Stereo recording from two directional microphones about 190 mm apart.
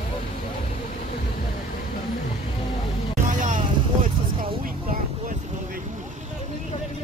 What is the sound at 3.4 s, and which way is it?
Vehicle, 40° right (ahead or behind).